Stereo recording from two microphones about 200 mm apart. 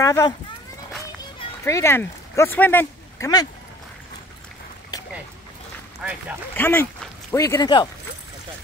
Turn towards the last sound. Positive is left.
turn(degrees=20)  # may be behind; listen again after turning